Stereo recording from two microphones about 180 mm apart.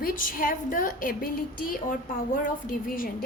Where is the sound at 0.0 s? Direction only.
50° left (ahead or behind).